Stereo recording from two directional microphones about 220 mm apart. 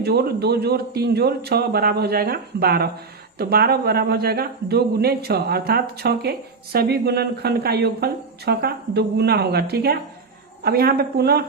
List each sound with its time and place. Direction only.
0.0 s speech: 45° right (ahead or behind)